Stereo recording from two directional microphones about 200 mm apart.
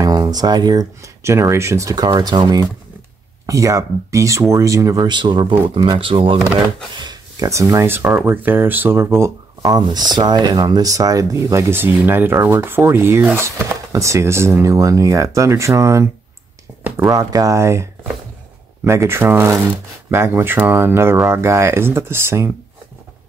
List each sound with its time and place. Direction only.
0.0 s speech: 20° right (ahead or behind)
18.9 s speech: 15° right (ahead or behind)